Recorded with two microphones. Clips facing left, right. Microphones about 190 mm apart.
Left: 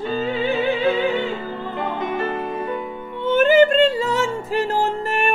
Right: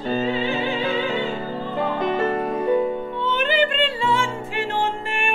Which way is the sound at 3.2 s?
45° left (ahead or behind).